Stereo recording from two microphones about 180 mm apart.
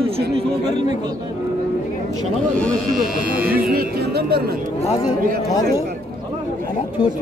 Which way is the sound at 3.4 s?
55° right (ahead or behind).